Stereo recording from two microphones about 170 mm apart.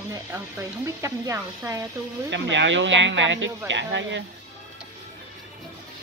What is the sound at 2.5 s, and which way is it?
Speech, 90° right.